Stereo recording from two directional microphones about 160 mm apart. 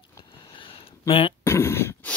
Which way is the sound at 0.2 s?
30° left (ahead or behind).